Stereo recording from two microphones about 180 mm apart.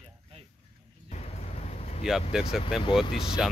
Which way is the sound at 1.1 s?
35° left (ahead or behind).